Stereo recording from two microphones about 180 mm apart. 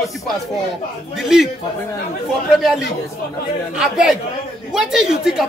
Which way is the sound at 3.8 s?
Centre (ahead or behind).